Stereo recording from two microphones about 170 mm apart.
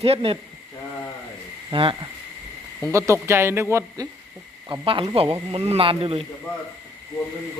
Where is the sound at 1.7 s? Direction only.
30° right (ahead or behind).